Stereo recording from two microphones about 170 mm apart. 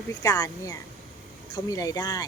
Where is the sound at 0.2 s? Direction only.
20° left (ahead or behind).